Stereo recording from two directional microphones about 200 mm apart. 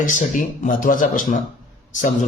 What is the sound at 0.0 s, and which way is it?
A woman's voice, 40° left (ahead or behind).